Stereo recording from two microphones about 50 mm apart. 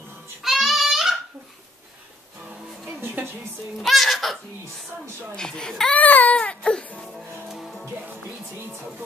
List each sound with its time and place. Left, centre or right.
0.4 s child singing: centre
3.2 s a sound: right
3.8 s speech: centre
5.3 s a child's voice: centre
5.9 s speech: left
7.0 s music: centre
8.5 s music: right